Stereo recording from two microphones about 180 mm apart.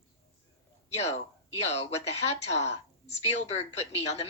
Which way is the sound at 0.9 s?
35° left (ahead or behind).